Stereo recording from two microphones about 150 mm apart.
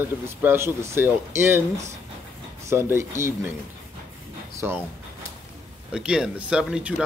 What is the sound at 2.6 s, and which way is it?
Speech, 15° right (ahead or behind).